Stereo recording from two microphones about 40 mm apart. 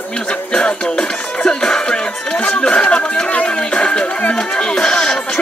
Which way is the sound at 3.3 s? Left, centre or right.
Left.